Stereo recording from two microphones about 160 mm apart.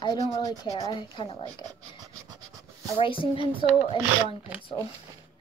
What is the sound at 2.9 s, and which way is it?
Speech, 35° left (ahead or behind).